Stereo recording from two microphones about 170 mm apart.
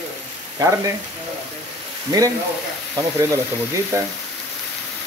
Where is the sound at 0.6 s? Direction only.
20° right (ahead or behind).